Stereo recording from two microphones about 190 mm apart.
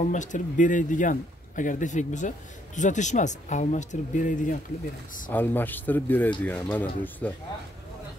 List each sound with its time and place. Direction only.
0.1 s speech: 40° left (ahead or behind)
5.3 s speech: 10° left (ahead or behind)